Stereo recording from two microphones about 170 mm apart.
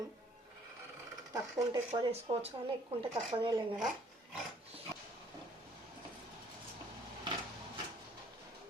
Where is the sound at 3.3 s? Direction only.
25° right (ahead or behind).